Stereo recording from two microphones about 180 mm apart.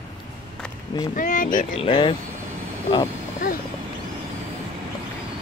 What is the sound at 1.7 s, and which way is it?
Speech, 30° left (ahead or behind).